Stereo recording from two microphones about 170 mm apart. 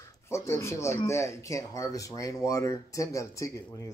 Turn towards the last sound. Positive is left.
turn(degrees=20)  # may be behind; listen again after turning